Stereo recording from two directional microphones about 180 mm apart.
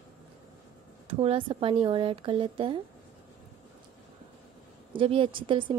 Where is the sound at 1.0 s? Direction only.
30° right (ahead or behind).